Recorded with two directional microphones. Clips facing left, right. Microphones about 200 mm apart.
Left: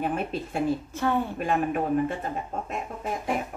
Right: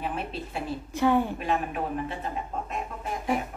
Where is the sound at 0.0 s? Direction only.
50° left (ahead or behind).